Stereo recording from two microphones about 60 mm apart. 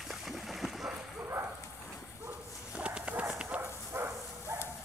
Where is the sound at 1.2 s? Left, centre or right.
Right.